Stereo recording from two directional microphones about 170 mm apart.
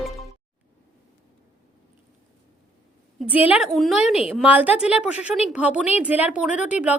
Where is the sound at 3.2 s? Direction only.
10° right (ahead or behind).